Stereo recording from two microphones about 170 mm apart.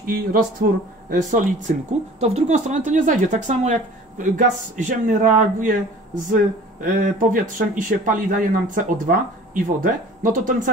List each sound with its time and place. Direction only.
0.0 s speech: 55° right (ahead or behind)
1.1 s speech: 45° right (ahead or behind)
6.8 s speech: 55° right (ahead or behind)